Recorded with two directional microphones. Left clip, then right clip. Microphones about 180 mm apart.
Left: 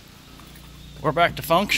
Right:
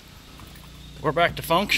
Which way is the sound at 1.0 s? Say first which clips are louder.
Left 2 dB; 15° left (ahead or behind).